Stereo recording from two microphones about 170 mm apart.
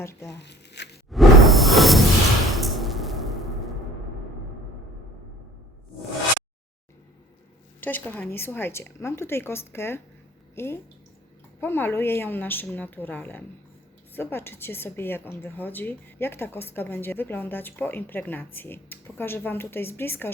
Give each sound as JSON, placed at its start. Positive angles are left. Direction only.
{"t": 0.0, "sound": "a woman's voice", "side_deg": 15}
{"t": 0.3, "sound": "crumpling", "side_deg": 85}
{"t": 1.1, "sound": "whoosh", "side_deg": 0}
{"t": 2.5, "sound": "music", "side_deg": 0}
{"t": 7.8, "sound": "a woman's voice", "side_deg": 10}